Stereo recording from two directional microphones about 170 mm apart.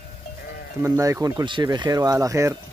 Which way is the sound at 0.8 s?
20° right (ahead or behind).